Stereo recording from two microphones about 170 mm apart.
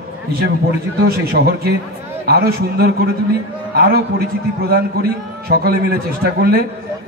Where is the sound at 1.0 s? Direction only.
65° right (ahead or behind).